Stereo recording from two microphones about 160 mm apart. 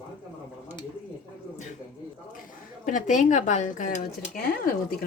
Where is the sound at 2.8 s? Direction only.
55° left (ahead or behind).